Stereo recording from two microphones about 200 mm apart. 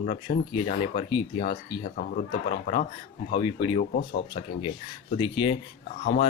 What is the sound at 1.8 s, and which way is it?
Speech, 35° left (ahead or behind).